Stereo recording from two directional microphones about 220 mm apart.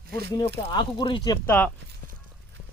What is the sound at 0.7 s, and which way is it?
Speech, 20° left (ahead or behind).